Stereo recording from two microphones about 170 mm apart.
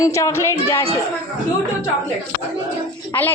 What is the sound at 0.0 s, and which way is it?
Speech, 20° left (ahead or behind).